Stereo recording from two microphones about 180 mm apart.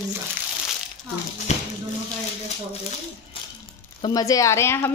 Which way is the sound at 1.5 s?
40° left (ahead or behind).